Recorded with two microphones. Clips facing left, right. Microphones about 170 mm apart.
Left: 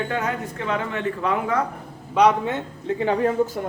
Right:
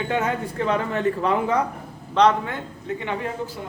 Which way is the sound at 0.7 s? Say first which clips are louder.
Right 3 dB; 35° right (ahead or behind).